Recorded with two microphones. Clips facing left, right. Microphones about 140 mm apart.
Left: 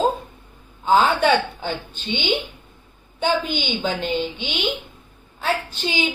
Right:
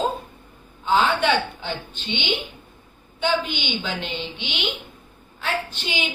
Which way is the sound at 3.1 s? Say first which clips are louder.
Left 2 dB; 40° left (ahead or behind).